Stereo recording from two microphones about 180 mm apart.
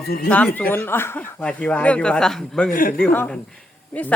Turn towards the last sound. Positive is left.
turn(degrees=10)  # may be behind; listen again after turning